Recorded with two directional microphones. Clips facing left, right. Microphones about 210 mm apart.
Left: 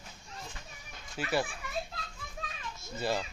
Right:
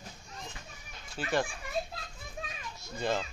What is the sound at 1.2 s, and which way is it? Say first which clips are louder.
Speech: even; 10° left (ahead or behind).